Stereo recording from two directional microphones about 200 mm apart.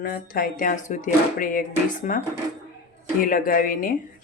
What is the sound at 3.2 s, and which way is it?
Speech, 45° left (ahead or behind).